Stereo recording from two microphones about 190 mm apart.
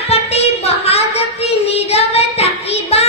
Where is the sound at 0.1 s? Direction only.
30° left (ahead or behind).